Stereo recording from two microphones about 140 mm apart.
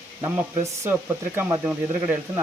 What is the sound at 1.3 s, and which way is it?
Speech, 15° right (ahead or behind).